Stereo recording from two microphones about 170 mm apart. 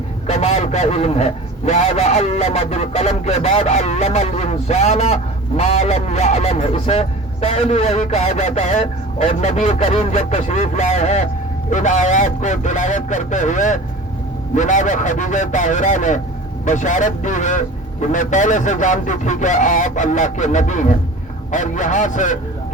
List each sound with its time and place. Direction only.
0.3 s a man's voice: 40° left (ahead or behind)